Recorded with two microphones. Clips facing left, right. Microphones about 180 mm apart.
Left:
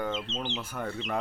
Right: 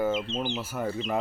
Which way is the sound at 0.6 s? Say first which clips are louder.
Right 4 dB; 5° right (ahead or behind).